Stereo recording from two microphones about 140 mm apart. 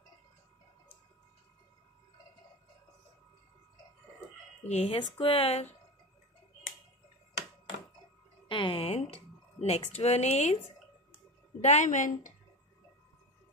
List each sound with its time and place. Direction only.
4.6 s speech: 50° left (ahead or behind)
8.5 s a sound: 40° left (ahead or behind)
11.6 s a woman's voice: 55° left (ahead or behind)